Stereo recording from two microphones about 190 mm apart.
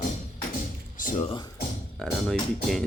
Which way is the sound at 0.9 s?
40° left (ahead or behind).